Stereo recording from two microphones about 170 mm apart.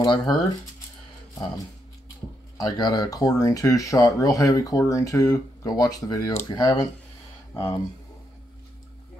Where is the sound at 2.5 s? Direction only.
25° left (ahead or behind).